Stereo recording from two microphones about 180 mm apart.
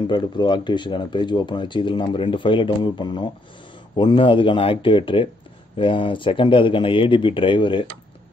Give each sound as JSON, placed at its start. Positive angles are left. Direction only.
{"t": 0.0, "sound": "speech", "side_deg": 25}